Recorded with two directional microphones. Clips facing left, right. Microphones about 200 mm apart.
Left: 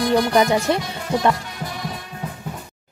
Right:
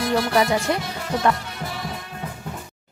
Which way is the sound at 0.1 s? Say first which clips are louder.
Left 3 dB; 20° left (ahead or behind).